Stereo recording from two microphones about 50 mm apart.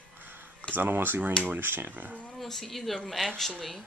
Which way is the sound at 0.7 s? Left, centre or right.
Right.